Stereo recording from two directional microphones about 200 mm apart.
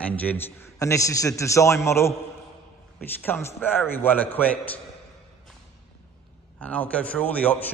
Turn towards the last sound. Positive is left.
turn(degrees=5)  # may be behind; listen again after turning